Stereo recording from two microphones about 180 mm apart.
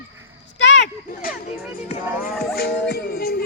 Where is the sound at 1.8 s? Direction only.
55° left (ahead or behind).